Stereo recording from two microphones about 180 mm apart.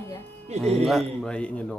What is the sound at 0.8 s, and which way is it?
Speech, centre (ahead or behind).